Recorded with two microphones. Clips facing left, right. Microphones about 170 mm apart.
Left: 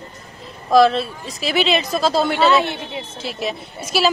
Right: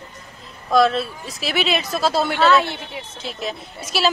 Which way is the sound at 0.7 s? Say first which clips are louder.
Left 3 dB; centre (ahead or behind).